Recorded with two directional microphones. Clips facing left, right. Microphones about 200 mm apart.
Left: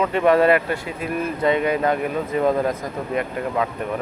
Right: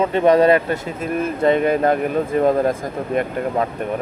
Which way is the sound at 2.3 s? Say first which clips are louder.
Right 3 dB; 30° right (ahead or behind).